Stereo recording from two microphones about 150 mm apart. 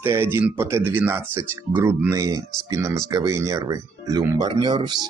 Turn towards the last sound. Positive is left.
turn(degrees=-30)  # may be behind; listen again after turning